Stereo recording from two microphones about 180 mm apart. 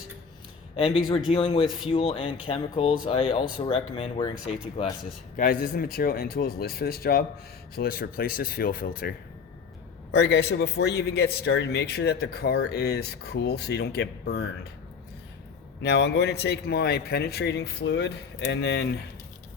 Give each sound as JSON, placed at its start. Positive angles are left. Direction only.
{"t": 0.8, "sound": "speech", "side_deg": 30}
{"t": 5.4, "sound": "speech", "side_deg": 55}
{"t": 10.1, "sound": "a man's voice", "side_deg": 70}
{"t": 15.8, "sound": "a man's voice", "side_deg": 70}